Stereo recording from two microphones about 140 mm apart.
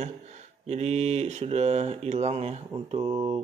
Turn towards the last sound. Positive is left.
turn(degrees=-40)  # may be behind; listen again after turning